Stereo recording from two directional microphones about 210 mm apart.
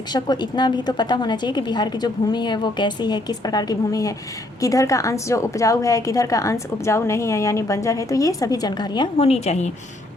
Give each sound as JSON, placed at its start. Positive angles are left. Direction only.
{"t": 0.1, "sound": "a woman's voice", "side_deg": 20}